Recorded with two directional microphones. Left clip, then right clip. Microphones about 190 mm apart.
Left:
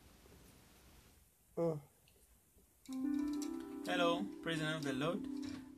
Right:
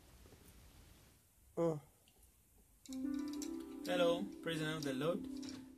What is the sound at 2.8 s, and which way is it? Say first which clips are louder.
Music: left 3 dB; 25° left (ahead or behind).